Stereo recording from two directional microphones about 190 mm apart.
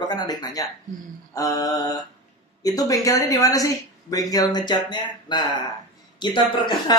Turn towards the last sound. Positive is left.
turn(degrees=25)  # may be behind; listen again after turning